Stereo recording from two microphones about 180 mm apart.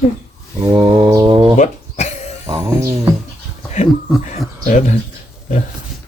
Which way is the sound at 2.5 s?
15° right (ahead or behind).